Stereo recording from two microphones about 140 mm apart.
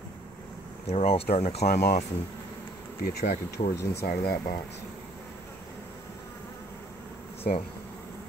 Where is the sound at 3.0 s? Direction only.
90° left.